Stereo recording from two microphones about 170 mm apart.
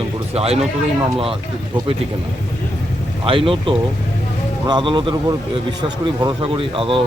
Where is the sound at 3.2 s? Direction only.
30° right (ahead or behind).